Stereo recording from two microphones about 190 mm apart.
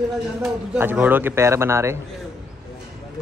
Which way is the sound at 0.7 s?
10° right (ahead or behind).